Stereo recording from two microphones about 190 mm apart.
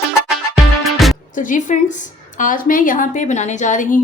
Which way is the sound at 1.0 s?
Centre (ahead or behind).